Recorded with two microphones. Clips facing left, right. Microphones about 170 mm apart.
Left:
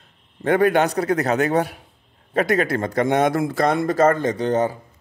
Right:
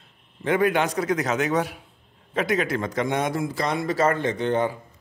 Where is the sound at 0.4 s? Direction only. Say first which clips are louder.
Left 4 dB; 45° left (ahead or behind).